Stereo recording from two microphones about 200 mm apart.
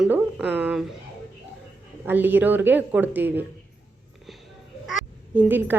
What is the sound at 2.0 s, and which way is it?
A woman's voice, 10° right (ahead or behind).